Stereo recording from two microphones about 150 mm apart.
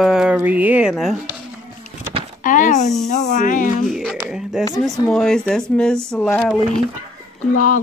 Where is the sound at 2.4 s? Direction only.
60° left (ahead or behind).